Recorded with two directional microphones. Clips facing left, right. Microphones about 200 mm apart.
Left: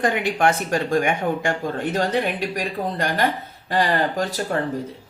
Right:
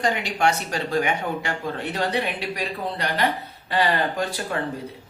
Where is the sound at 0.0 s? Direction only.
55° left (ahead or behind).